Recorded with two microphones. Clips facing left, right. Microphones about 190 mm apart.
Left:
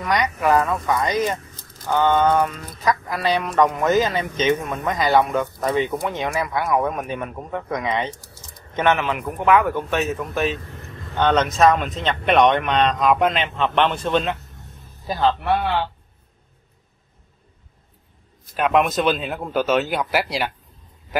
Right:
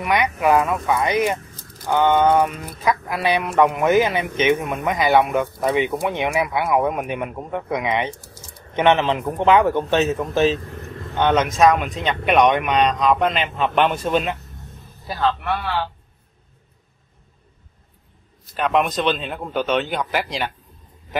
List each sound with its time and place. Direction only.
0.0 s a man's voice: 10° right (ahead or behind)
11.5 s speech: centre (ahead or behind)
15.0 s a man's voice: 25° left (ahead or behind)
18.6 s speech: 5° left (ahead or behind)